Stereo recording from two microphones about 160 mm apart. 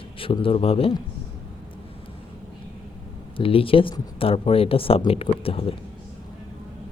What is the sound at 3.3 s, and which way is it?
Speech, 35° left (ahead or behind).